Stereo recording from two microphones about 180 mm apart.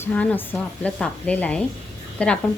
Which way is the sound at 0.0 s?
5° left (ahead or behind).